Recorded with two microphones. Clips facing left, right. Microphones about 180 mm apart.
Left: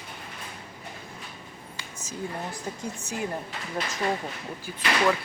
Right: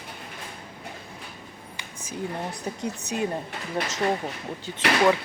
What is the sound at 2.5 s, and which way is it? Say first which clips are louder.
Speech: right 3 dB; 70° right (ahead or behind).